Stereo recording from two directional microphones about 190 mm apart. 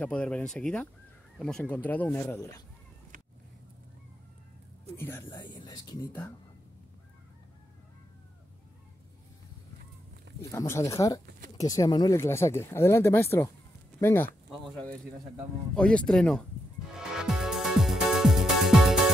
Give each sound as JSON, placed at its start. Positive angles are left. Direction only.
{"t": 0.0, "sound": "speech", "side_deg": 5}
{"t": 4.9, "sound": "speech", "side_deg": 10}
{"t": 10.5, "sound": "speech", "side_deg": 15}
{"t": 15.7, "sound": "speech", "side_deg": 5}
{"t": 16.9, "sound": "music", "side_deg": -5}